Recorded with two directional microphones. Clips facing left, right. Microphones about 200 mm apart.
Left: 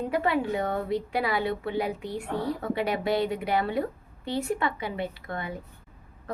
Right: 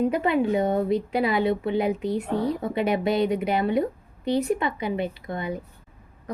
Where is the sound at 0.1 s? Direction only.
20° right (ahead or behind).